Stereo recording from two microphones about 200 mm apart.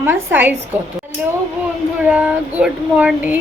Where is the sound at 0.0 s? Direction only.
10° right (ahead or behind).